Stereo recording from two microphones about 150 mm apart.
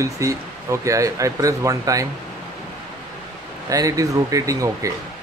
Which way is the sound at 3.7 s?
25° right (ahead or behind).